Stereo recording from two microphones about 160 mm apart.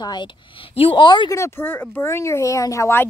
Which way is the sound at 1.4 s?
15° left (ahead or behind).